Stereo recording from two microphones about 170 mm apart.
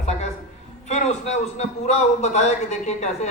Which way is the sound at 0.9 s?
40° left (ahead or behind).